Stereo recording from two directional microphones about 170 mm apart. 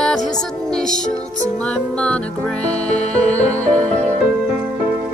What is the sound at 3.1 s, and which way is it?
Music, 40° left (ahead or behind).